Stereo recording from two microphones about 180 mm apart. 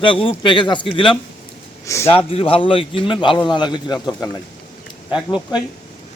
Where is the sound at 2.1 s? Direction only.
30° left (ahead or behind).